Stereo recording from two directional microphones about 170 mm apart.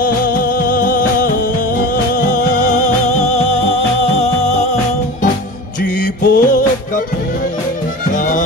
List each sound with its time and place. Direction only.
0.7 s music: 55° left (ahead or behind)
6.2 s music: 55° left (ahead or behind)